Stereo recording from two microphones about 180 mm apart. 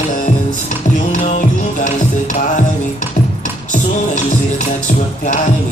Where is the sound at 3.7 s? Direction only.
45° left (ahead or behind).